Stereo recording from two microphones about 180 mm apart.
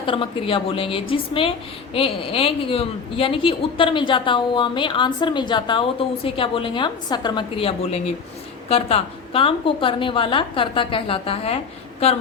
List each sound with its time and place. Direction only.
0.0 s a woman's voice: 30° left (ahead or behind)